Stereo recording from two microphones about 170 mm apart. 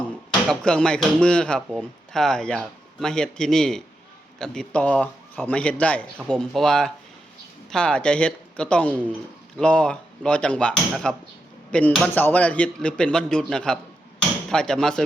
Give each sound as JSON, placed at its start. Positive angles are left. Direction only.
{"t": 0.4, "sound": "a man's voice", "side_deg": 5}
{"t": 14.2, "sound": "hammer", "side_deg": 5}